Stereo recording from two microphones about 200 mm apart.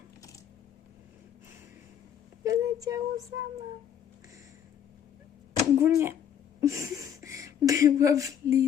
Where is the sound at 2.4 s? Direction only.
15° right (ahead or behind).